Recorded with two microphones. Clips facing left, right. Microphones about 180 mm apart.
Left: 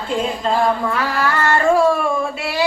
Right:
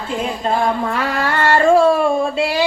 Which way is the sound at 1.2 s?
25° right (ahead or behind).